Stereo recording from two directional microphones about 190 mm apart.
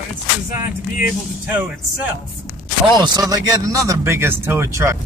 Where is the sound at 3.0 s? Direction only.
20° right (ahead or behind).